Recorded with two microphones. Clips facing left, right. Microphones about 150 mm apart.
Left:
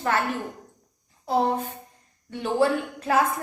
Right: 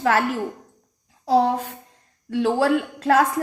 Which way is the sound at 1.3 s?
90° right.